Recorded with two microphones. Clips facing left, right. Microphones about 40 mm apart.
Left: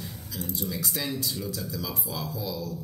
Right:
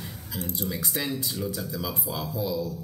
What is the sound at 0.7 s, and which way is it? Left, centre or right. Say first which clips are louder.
Speech: right 2 dB; right.